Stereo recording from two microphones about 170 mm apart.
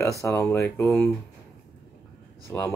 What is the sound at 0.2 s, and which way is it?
Speech, 15° left (ahead or behind).